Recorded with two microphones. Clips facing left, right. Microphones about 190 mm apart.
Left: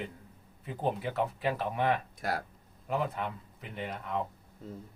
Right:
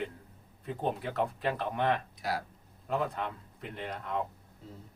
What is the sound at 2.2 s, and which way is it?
Speech, 50° left (ahead or behind).